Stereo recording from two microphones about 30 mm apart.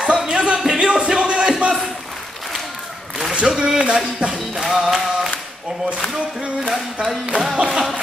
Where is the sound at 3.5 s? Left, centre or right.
Right.